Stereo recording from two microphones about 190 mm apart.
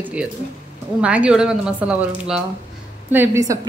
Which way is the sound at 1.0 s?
5° right (ahead or behind).